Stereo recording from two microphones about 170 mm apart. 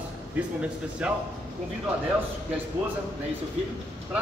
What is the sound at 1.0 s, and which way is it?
Speech, 5° right (ahead or behind).